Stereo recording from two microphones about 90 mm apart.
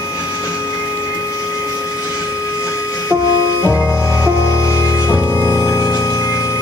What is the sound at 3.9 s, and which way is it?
Music, 30° left (ahead or behind).